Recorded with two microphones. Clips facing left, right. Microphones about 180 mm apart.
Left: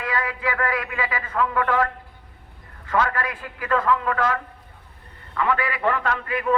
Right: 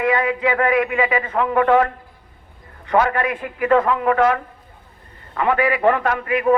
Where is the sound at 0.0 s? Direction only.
20° right (ahead or behind).